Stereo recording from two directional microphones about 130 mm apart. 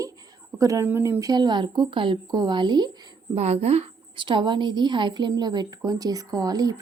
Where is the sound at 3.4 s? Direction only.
55° right (ahead or behind); by 6.8 s 30° right (ahead or behind).